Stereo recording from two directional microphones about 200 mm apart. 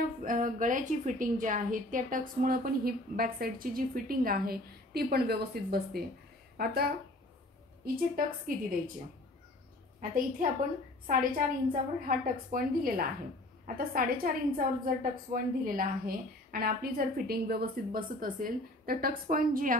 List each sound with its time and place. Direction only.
0.2 s a woman's voice: 40° right (ahead or behind)
9.9 s a woman's voice: 40° right (ahead or behind)